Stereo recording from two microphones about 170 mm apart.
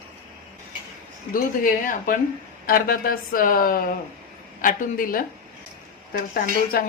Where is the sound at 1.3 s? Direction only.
55° left (ahead or behind).